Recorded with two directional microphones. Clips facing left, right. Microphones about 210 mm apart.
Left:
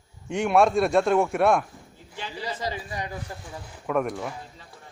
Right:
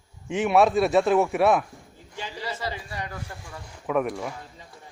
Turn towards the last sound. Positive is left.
turn(degrees=0)  # may be behind; listen again after turning